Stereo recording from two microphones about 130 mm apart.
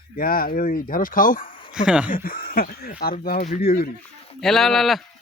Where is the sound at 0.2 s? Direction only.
90° left.